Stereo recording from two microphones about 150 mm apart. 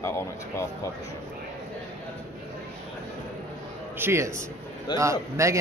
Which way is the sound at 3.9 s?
15° right (ahead or behind).